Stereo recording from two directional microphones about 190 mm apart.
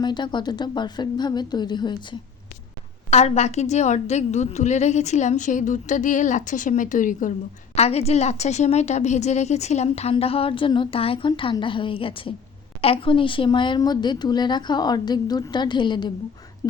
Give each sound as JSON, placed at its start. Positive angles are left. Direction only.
{"t": 0.0, "sound": "a woman's voice", "side_deg": 25}
{"t": 3.1, "sound": "a woman's voice", "side_deg": 35}
{"t": 7.8, "sound": "a woman's voice", "side_deg": 35}